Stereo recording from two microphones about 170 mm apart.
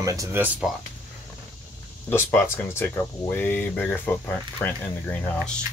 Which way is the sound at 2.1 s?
15° left (ahead or behind).